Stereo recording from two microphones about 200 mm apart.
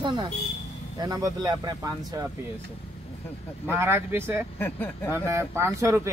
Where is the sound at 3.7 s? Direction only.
10° right (ahead or behind).